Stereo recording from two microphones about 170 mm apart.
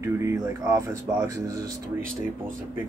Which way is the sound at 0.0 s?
15° right (ahead or behind).